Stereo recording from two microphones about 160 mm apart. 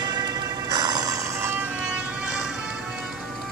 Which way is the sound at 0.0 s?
25° right (ahead or behind).